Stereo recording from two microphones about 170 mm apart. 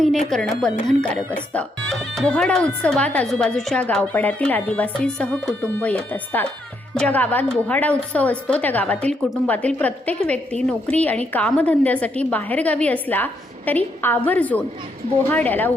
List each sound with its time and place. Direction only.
0.3 s a woman's voice: centre (ahead or behind)